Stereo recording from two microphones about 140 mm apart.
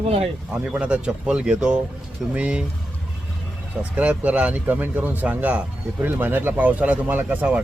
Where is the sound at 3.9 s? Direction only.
10° right (ahead or behind).